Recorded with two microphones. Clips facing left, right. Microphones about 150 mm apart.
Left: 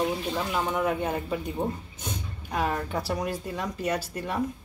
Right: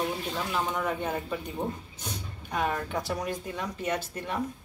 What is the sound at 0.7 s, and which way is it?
Speech, 10° left (ahead or behind).